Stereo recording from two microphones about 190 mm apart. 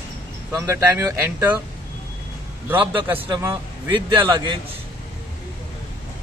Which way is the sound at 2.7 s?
25° right (ahead or behind).